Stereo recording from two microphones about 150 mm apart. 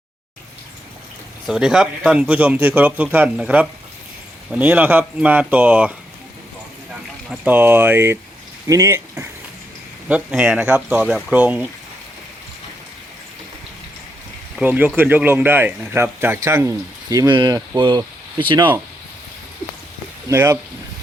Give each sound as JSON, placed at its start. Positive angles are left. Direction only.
{"t": 1.5, "sound": "speech", "side_deg": -5}
{"t": 7.4, "sound": "speech", "side_deg": -10}
{"t": 10.1, "sound": "speech", "side_deg": -5}
{"t": 14.6, "sound": "speech", "side_deg": -10}
{"t": 20.2, "sound": "speech", "side_deg": -20}